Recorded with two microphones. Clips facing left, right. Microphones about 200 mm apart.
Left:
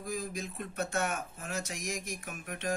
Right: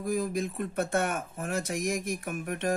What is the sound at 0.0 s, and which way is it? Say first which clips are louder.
Speech: right 8 dB; 55° right (ahead or behind).